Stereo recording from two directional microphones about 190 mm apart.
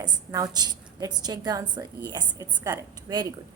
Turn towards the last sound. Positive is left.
turn(degrees=-20)  # may be behind; listen again after turning